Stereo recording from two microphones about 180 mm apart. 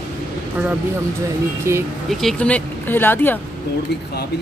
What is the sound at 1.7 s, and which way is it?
Speech, 15° right (ahead or behind).